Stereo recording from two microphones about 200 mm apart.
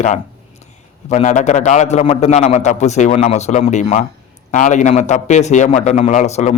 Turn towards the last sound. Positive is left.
turn(degrees=35)  # may be behind; listen again after turning